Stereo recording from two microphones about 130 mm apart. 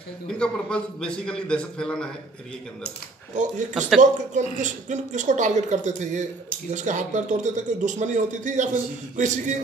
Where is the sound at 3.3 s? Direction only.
70° right (ahead or behind).